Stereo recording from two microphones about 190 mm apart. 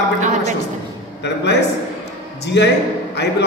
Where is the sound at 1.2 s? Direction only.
65° left (ahead or behind).